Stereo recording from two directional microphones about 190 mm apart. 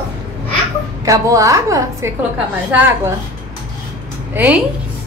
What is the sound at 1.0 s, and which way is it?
A woman's voice, 15° right (ahead or behind).